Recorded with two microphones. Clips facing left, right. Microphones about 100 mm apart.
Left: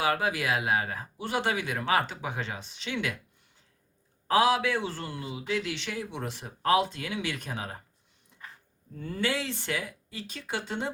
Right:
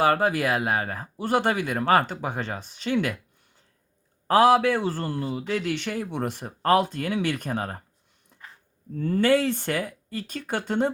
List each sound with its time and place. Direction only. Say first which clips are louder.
0.0 s speech: right 6 dB; 45° right (ahead or behind)
4.3 s speech: right 6 dB; 45° right (ahead or behind)
9.0 s speech: right 10 dB; 50° right (ahead or behind)